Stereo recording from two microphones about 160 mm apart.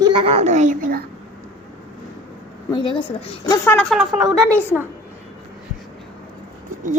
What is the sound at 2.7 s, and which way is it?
Speech, 30° left (ahead or behind).